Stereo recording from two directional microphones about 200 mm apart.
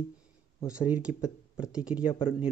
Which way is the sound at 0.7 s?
5° right (ahead or behind).